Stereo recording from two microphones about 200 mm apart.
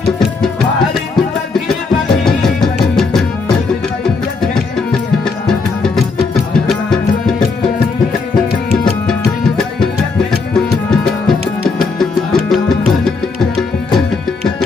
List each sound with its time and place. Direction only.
2.0 s music: centre (ahead or behind)
5.5 s music: centre (ahead or behind)
10.5 s music: centre (ahead or behind)